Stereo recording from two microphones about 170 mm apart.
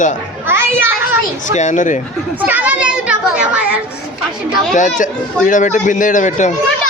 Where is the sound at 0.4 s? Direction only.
15° right (ahead or behind).